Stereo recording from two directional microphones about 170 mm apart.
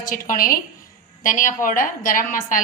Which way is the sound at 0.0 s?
55° left (ahead or behind).